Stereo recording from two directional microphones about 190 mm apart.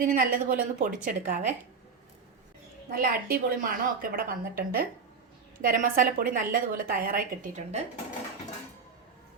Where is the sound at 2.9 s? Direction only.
50° right (ahead or behind).